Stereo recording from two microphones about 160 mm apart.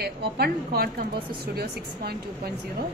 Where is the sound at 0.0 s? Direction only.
80° right.